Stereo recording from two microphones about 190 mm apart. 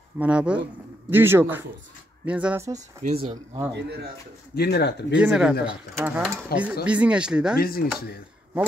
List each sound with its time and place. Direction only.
0.2 s speech: 5° right (ahead or behind)
3.0 s speech: 35° right (ahead or behind)
3.7 s speech: 60° right (ahead or behind)
4.6 s speech: 60° left (ahead or behind)
5.1 s speech: 5° right (ahead or behind)
7.5 s chopping: 50° left (ahead or behind)